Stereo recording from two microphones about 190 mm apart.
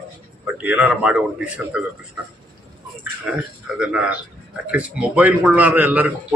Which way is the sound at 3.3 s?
5° right (ahead or behind).